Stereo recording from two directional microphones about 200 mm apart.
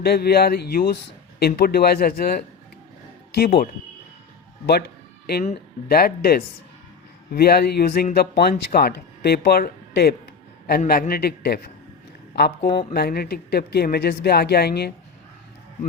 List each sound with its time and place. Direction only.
0.0 s speech: 50° left (ahead or behind)
5.4 s speech: 45° left (ahead or behind)
12.6 s speech: 25° left (ahead or behind)
12.9 s speech: 50° left (ahead or behind)